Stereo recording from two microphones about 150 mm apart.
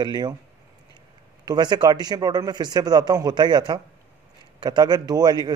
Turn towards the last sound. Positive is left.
turn(degrees=-25)  # may be behind; listen again after turning